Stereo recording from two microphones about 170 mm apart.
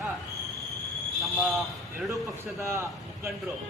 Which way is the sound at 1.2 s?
Centre (ahead or behind).